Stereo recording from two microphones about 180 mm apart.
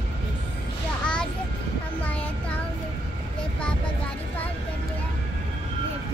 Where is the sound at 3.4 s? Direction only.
5° left (ahead or behind).